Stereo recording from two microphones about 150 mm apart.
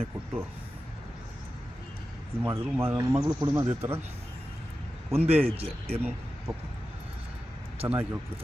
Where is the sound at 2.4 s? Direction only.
15° right (ahead or behind).